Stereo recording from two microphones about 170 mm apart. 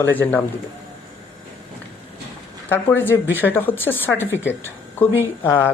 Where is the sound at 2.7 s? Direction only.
10° left (ahead or behind).